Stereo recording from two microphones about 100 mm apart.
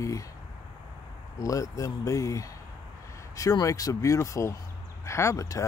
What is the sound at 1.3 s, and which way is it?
Speech, 35° left (ahead or behind).